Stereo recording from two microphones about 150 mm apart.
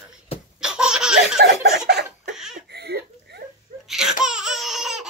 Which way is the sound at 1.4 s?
90° right.